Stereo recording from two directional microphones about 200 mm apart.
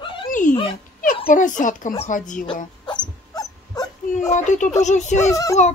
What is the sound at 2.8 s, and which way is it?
Dog, 20° left (ahead or behind).